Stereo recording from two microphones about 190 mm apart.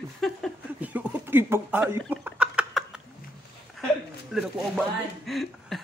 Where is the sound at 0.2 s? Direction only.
5° right (ahead or behind).